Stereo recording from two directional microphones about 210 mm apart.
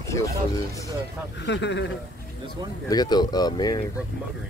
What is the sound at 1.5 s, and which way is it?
Speech, 55° left (ahead or behind).